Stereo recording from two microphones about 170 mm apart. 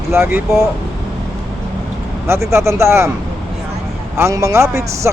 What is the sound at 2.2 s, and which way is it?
Speech, 15° right (ahead or behind).